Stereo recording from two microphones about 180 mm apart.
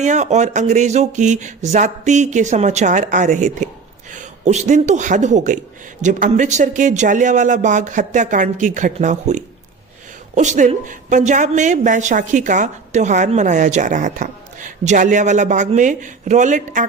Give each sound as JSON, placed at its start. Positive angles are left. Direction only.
{"t": 0.0, "sound": "a man's voice", "side_deg": -40}